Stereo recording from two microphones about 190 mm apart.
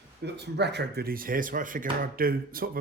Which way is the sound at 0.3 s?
65° right (ahead or behind).